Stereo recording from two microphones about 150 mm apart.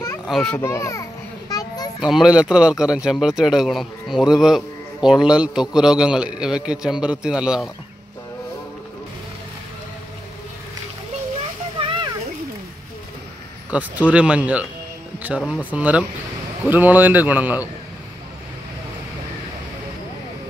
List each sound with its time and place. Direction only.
0.3 s speech: 5° left (ahead or behind)
0.6 s a child's voice: 20° left (ahead or behind)
1.5 s children playing: 25° left (ahead or behind)
2.0 s speech: 5° right (ahead or behind)
11.8 s a sound: 40° right (ahead or behind)
13.7 s speech: 10° right (ahead or behind)